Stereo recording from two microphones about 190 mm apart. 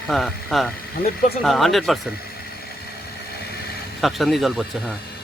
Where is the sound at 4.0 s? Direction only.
Centre (ahead or behind).